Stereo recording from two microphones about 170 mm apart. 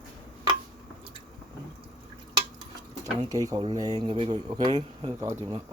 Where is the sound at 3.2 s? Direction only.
20° right (ahead or behind).